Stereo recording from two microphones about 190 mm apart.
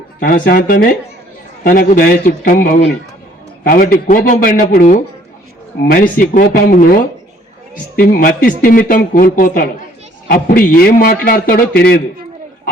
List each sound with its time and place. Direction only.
0.2 s speech: 45° left (ahead or behind)